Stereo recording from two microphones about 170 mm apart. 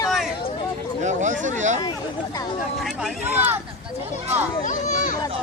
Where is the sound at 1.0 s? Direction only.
45° right (ahead or behind).